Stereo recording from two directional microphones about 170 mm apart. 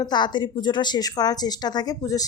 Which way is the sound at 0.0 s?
25° left (ahead or behind).